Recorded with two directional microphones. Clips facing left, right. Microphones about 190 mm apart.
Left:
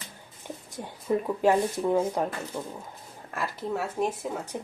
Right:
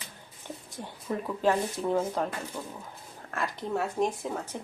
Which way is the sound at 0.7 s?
15° left (ahead or behind).